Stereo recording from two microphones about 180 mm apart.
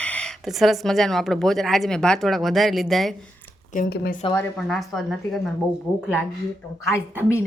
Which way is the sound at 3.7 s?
50° left (ahead or behind).